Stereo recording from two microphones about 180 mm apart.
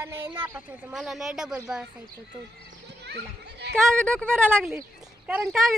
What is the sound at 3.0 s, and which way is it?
Children playing, 70° right (ahead or behind).